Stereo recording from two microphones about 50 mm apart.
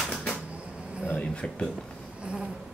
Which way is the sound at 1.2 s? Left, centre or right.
Left.